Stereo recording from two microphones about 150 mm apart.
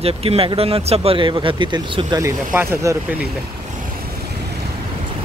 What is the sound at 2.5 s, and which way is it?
Speech, 15° right (ahead or behind).